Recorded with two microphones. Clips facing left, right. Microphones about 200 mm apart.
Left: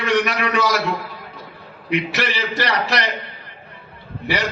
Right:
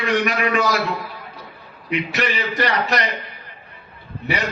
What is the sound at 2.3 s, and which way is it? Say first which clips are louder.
Speech: right 1 dB; 90° left.